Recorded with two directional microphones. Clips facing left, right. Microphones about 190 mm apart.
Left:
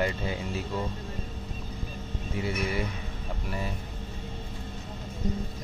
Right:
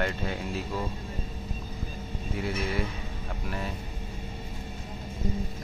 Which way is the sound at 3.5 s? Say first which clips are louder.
Even; centre (ahead or behind).